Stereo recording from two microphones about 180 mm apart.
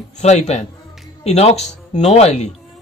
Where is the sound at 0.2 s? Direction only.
40° left (ahead or behind).